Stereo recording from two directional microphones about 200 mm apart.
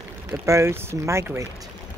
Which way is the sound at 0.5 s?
15° right (ahead or behind).